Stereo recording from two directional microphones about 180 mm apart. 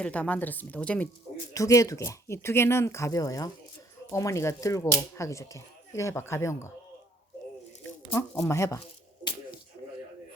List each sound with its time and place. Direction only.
0.0 s speech: 5° left (ahead or behind)
1.5 s speech: 20° left (ahead or behind)
8.1 s speech: 15° left (ahead or behind)